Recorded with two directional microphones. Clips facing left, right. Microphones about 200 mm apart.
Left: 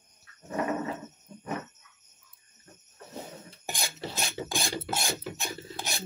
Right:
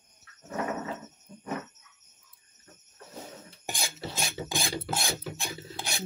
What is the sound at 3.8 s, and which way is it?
Filing, 10° right (ahead or behind).